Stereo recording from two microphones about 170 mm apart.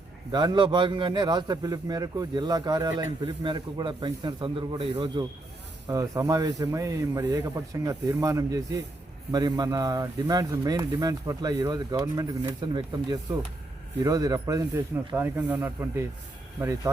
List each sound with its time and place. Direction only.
0.3 s a man's voice: 25° right (ahead or behind)